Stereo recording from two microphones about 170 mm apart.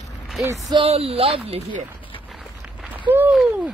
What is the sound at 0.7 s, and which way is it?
Speech, 35° right (ahead or behind).